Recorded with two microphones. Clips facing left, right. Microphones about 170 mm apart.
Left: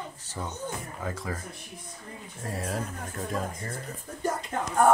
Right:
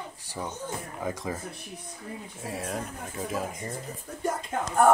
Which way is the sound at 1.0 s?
15° right (ahead or behind).